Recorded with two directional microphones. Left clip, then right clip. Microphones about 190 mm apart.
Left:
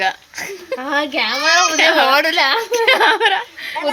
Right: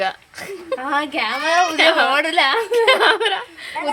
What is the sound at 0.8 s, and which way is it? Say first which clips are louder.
Speech: left 3 dB; 35° left (ahead or behind).